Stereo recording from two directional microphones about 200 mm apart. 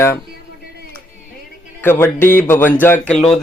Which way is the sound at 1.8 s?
10° left (ahead or behind).